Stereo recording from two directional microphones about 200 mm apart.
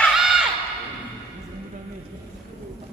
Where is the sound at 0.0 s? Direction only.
Centre (ahead or behind).